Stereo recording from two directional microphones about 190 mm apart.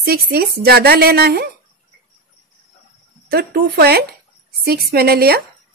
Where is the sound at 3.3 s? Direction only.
55° right (ahead or behind).